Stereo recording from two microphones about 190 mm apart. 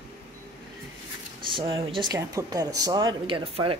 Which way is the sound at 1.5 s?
25° right (ahead or behind).